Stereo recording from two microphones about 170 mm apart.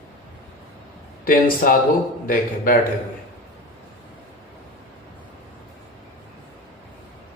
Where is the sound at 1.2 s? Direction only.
55° left (ahead or behind).